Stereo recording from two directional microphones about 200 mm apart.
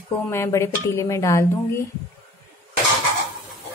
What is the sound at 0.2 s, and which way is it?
Speech, 10° left (ahead or behind).